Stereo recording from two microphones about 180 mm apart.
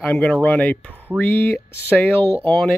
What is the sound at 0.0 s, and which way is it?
Speech, 5° left (ahead or behind).